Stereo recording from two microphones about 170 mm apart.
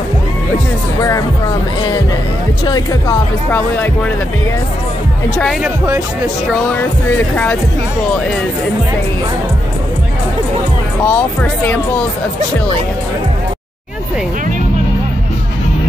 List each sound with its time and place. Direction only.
2.6 s speech: 20° left (ahead or behind)
5.6 s speech: 20° right (ahead or behind)
6.5 s speech: 10° left (ahead or behind)
11.1 s speech: 10° left (ahead or behind)